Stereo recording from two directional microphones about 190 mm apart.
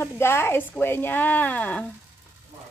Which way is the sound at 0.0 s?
15° left (ahead or behind).